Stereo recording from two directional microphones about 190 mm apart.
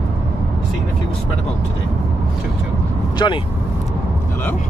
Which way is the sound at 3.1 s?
25° left (ahead or behind).